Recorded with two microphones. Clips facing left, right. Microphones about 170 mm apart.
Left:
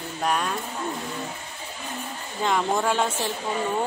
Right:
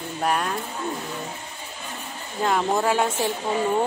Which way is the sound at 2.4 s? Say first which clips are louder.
Right 2 dB; 5° right (ahead or behind).